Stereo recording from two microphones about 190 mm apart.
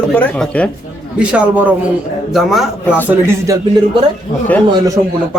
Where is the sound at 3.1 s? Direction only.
15° right (ahead or behind).